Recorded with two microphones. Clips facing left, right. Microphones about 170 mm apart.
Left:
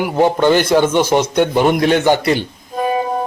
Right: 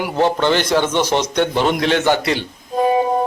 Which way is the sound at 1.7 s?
50° left (ahead or behind).